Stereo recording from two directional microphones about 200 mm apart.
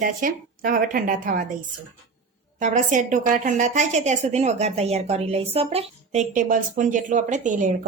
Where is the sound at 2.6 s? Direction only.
40° right (ahead or behind).